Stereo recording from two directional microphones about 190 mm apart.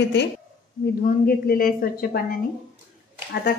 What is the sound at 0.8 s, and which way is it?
A woman's voice, 50° left (ahead or behind).